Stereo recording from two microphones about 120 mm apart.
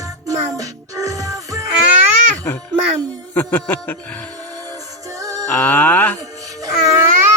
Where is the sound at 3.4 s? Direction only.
15° left (ahead or behind).